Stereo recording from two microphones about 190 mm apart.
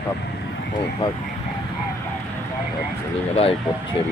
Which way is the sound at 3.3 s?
30° left (ahead or behind).